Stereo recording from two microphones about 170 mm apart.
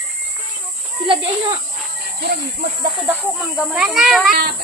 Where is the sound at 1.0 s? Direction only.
30° right (ahead or behind).